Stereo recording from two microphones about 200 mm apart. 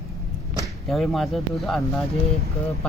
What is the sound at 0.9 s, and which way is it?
Speech, centre (ahead or behind).